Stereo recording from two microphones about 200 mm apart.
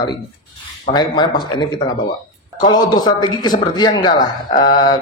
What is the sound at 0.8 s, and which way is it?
Speech, 20° left (ahead or behind).